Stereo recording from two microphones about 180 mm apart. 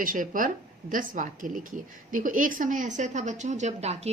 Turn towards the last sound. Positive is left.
turn(degrees=-35)  # may be behind; listen again after turning